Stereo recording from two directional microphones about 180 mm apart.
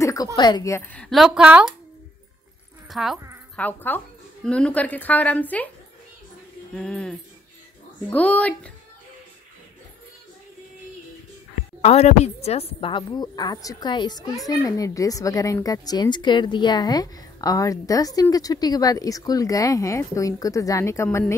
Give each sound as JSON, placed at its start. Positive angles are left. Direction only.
{"t": 0.0, "sound": "a sound", "side_deg": 20}
{"t": 0.4, "sound": "a woman's voice", "side_deg": 20}
{"t": 2.9, "sound": "speech", "side_deg": 0}
{"t": 3.5, "sound": "a woman's voice", "side_deg": 10}
{"t": 6.7, "sound": "a woman's voice", "side_deg": 5}
{"t": 11.8, "sound": "a woman's voice", "side_deg": 35}